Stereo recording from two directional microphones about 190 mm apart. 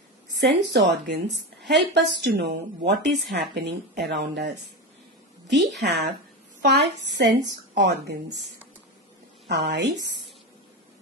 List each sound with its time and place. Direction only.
0.4 s speech: 65° right (ahead or behind)
5.5 s a woman's voice: centre (ahead or behind)
5.8 s speech: 60° right (ahead or behind)
9.5 s speech: 60° right (ahead or behind)